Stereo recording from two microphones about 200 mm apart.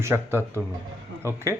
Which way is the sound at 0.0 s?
10° right (ahead or behind).